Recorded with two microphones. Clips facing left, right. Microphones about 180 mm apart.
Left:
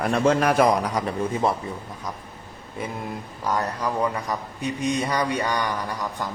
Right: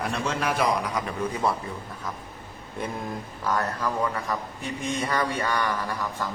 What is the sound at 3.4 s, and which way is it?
Speech, 20° left (ahead or behind).